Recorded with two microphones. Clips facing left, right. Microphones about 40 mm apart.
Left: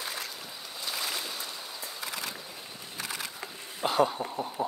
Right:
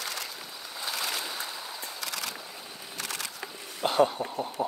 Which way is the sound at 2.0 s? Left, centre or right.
Right.